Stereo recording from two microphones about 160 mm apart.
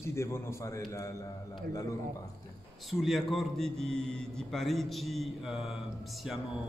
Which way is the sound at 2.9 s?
Centre (ahead or behind).